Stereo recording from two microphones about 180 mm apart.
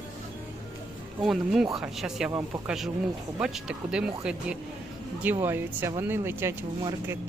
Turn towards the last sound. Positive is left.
turn(degrees=-15)  # may be behind; listen again after turning